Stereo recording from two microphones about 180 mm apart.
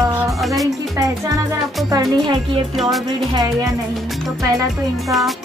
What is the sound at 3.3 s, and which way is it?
Speech, 20° right (ahead or behind).